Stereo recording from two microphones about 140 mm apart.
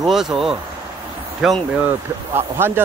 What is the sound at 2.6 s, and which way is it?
Speech, 15° right (ahead or behind).